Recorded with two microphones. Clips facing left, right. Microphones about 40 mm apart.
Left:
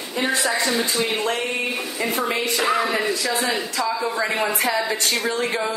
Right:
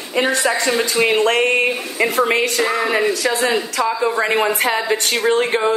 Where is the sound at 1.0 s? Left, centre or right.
Right.